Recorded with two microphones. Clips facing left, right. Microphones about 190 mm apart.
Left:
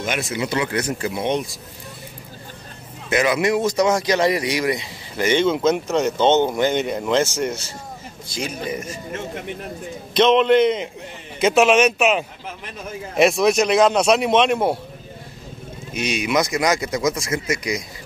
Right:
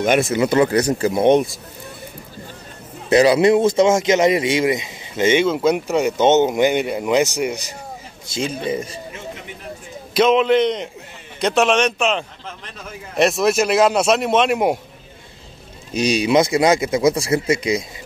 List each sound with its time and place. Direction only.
0.0 s speech: 50° right (ahead or behind)
0.7 s speech: 40° right (ahead or behind); by 1.6 s 55° right (ahead or behind)
3.1 s speech: 35° right (ahead or behind)
5.4 s speech: 10° right (ahead or behind)
8.3 s speech: 30° right (ahead or behind)
10.1 s a man's voice: 5° right (ahead or behind)
15.9 s speech: 35° right (ahead or behind)